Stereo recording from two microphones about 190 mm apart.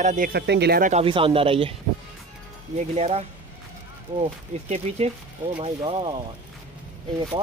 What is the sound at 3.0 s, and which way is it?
Speech, 35° right (ahead or behind).